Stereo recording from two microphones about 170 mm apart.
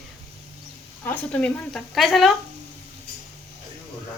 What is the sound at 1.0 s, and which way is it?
Speech, 10° left (ahead or behind).